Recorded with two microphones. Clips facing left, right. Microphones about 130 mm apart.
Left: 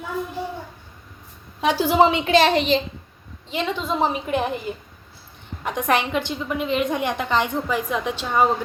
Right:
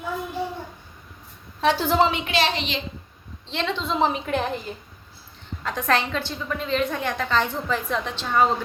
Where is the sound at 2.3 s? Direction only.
50° left (ahead or behind).